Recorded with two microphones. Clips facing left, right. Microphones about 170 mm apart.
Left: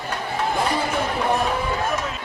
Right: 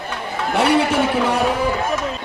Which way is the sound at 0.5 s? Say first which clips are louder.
Right 9 dB; 75° right (ahead or behind).